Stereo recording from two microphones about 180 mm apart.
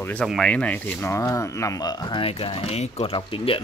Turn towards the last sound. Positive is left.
turn(degrees=30)  # may be behind; listen again after turning